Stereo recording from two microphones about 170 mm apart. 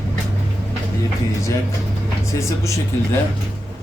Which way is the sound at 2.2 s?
15° left (ahead or behind).